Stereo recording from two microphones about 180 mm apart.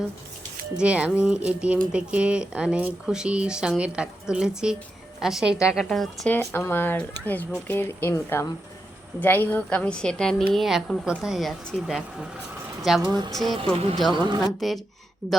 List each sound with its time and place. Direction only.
0.8 s speech: 5° right (ahead or behind)
13.0 s speech: 25° right (ahead or behind)
13.3 s speech: centre (ahead or behind)
14.1 s speech: 25° right (ahead or behind)
14.6 s speech: centre (ahead or behind)